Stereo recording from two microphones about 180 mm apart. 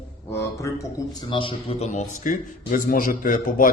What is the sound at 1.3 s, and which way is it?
A man's voice, 30° left (ahead or behind).